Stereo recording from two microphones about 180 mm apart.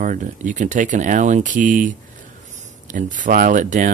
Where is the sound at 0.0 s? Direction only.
45° right (ahead or behind).